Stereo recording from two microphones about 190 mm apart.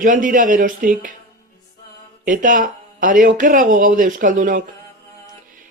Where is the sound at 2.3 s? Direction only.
45° right (ahead or behind).